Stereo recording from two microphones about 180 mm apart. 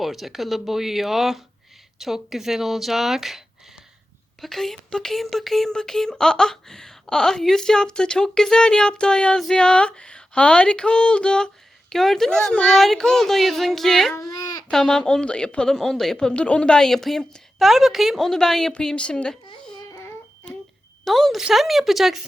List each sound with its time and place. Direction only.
0.0 s speech: centre (ahead or behind)
14.2 s a child's voice: 20° left (ahead or behind)
14.7 s speech: 5° left (ahead or behind)
21.0 s speech: centre (ahead or behind)